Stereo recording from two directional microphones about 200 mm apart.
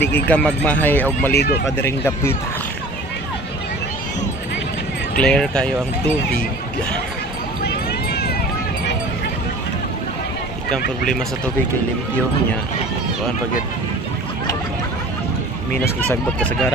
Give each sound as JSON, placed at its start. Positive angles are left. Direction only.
{"t": 0.0, "sound": "speech", "side_deg": 10}
{"t": 1.3, "sound": "speech", "side_deg": 55}
{"t": 1.8, "sound": "speech", "side_deg": 10}
{"t": 5.2, "sound": "speech", "side_deg": 5}
{"t": 7.6, "sound": "a sound", "side_deg": 55}
{"t": 16.3, "sound": "speech", "side_deg": 5}